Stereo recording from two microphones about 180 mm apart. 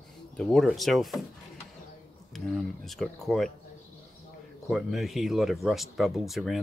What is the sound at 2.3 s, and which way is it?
Speech, centre (ahead or behind).